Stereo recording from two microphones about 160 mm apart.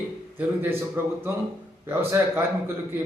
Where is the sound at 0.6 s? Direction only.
10° right (ahead or behind).